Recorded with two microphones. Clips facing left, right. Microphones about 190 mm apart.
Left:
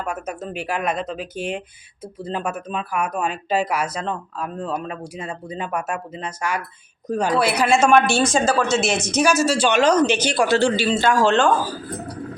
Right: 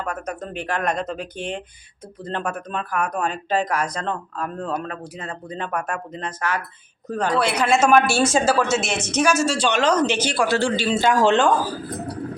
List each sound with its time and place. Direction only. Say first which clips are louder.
0.0 s speech: left 1 dB; 10° left (ahead or behind)
7.8 s a woman's voice: even; 5° right (ahead or behind)
9.0 s speech: left 1 dB; 10° left (ahead or behind)
10.8 s a man's voice: left 1 dB; 5° right (ahead or behind)
11.1 s a woman's voice: even; 15° right (ahead or behind)